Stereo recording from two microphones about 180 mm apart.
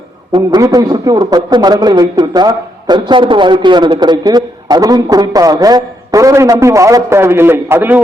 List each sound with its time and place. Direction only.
0.3 s a man's voice: 20° right (ahead or behind)